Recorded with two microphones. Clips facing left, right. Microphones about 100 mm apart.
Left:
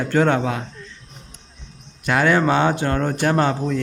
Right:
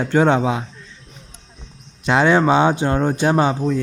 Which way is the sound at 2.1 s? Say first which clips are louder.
Right 3 dB; 20° right (ahead or behind).